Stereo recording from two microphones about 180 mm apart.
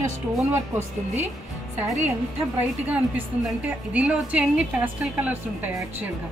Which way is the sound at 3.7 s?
5° right (ahead or behind).